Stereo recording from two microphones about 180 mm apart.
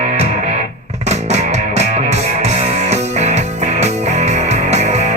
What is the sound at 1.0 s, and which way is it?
Music, 40° right (ahead or behind).